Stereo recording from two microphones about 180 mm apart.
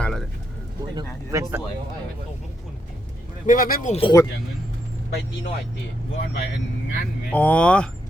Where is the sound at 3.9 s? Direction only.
30° left (ahead or behind).